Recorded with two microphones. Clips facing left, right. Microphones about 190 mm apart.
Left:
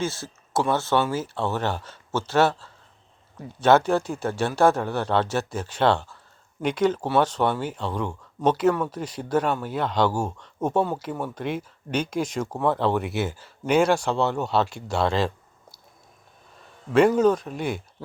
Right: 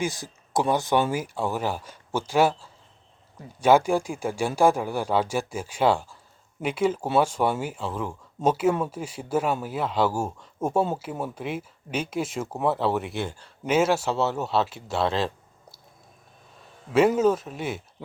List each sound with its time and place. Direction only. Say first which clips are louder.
0.0 s speech: even; 15° right (ahead or behind)
17.2 s speech: left 2 dB; 5° right (ahead or behind)